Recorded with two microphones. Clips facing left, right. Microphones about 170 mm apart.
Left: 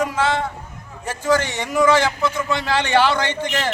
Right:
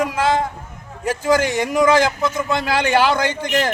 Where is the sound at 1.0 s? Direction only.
10° right (ahead or behind).